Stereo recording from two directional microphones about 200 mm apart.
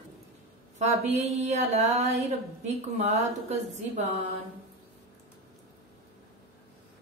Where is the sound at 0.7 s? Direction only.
35° right (ahead or behind).